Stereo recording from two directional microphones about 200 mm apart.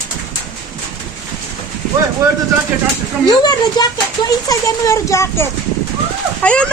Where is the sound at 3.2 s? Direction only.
20° left (ahead or behind).